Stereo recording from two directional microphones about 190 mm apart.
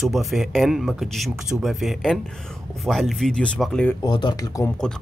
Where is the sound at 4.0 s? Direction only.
20° left (ahead or behind).